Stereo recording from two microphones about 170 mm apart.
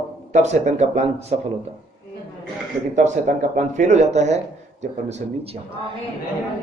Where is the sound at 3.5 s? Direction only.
45° right (ahead or behind).